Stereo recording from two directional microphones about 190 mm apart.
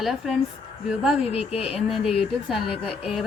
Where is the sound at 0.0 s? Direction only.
Centre (ahead or behind).